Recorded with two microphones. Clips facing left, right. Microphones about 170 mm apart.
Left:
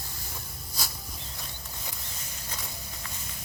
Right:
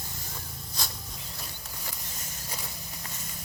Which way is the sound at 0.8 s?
5° left (ahead or behind).